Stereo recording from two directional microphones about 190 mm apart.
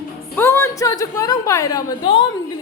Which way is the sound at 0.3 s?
10° left (ahead or behind).